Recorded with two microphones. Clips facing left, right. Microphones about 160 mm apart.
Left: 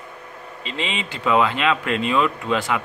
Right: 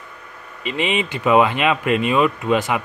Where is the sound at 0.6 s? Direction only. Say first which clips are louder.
Right 7 dB; 15° right (ahead or behind).